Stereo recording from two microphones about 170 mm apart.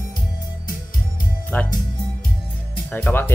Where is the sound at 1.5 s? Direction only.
10° left (ahead or behind).